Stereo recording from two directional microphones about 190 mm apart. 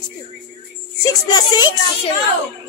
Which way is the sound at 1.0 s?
20° left (ahead or behind).